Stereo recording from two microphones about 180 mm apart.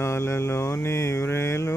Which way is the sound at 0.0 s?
15° left (ahead or behind).